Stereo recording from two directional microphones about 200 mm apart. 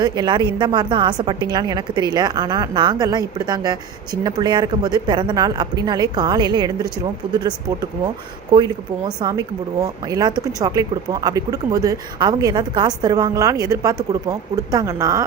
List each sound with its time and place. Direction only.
0.0 s speech: 20° right (ahead or behind)
8.5 s speech: 20° right (ahead or behind)